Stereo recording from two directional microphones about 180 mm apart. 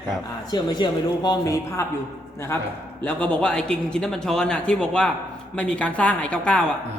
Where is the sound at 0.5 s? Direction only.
25° left (ahead or behind).